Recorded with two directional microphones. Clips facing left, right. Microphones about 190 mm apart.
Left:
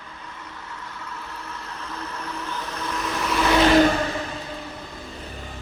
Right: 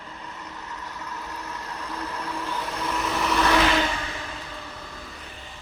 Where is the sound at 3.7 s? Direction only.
45° left (ahead or behind).